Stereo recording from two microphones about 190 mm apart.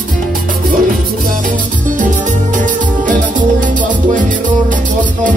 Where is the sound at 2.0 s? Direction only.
40° right (ahead or behind).